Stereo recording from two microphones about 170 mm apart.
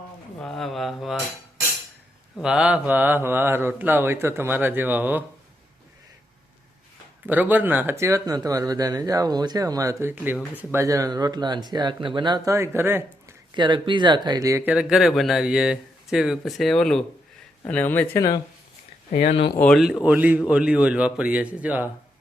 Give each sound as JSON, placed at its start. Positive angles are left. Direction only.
{"t": 0.4, "sound": "speech", "side_deg": 0}
{"t": 2.4, "sound": "speech", "side_deg": -5}
{"t": 7.3, "sound": "speech", "side_deg": -10}
{"t": 13.5, "sound": "speech", "side_deg": -25}
{"t": 14.7, "sound": "speech", "side_deg": -5}
{"t": 19.5, "sound": "speech", "side_deg": 5}
{"t": 19.8, "sound": "speech", "side_deg": -5}